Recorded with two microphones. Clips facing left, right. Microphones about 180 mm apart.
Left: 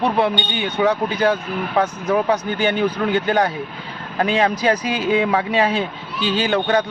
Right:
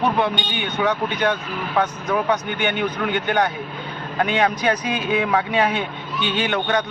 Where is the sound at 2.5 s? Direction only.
35° left (ahead or behind).